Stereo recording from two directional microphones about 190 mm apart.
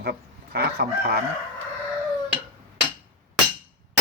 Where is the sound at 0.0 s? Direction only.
55° right (ahead or behind).